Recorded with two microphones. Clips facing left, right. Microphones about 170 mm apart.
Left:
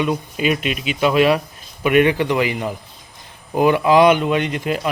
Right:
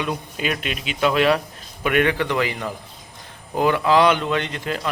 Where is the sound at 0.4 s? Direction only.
10° left (ahead or behind).